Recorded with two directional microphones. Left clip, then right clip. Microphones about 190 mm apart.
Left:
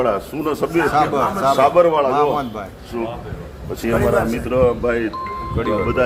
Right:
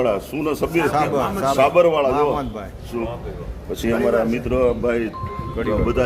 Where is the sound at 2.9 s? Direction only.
15° right (ahead or behind).